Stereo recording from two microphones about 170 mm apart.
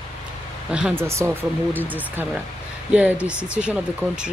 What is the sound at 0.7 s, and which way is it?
Speech, 10° right (ahead or behind).